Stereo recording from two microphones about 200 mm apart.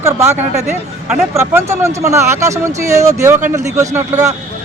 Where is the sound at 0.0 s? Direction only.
15° right (ahead or behind).